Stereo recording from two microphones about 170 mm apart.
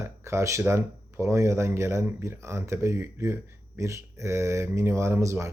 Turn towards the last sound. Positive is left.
turn(degrees=-15)  # may be behind; listen again after turning